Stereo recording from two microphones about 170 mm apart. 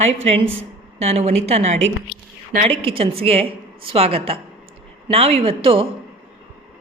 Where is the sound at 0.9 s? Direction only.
40° right (ahead or behind).